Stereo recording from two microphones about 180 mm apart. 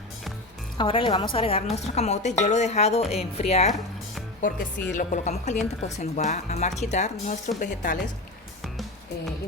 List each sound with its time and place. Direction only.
0.8 s a woman's voice: 30° left (ahead or behind); by 8.0 s 45° left (ahead or behind)